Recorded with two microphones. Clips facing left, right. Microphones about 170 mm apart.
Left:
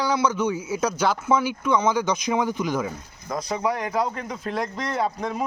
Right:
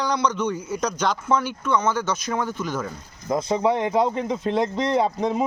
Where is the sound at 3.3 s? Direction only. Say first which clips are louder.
Right 5 dB; 25° right (ahead or behind).